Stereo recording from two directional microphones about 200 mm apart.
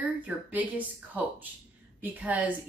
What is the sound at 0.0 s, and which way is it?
Speech, 10° right (ahead or behind).